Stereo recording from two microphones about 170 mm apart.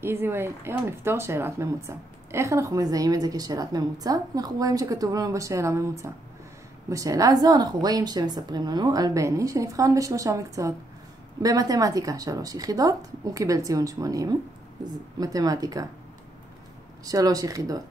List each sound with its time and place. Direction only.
0.0 s speech: 15° right (ahead or behind)
17.0 s speech: 20° right (ahead or behind)